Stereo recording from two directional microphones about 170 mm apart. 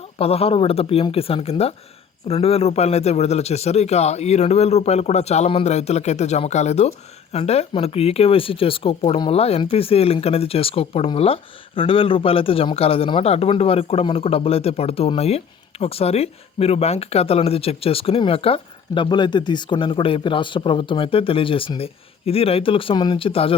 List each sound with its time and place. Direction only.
0.2 s speech: 35° left (ahead or behind)